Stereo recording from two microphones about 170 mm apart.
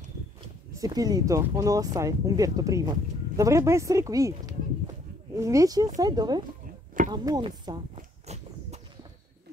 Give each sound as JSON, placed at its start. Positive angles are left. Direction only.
{"t": 0.7, "sound": "speech", "side_deg": -20}
{"t": 8.3, "sound": "walk", "side_deg": -40}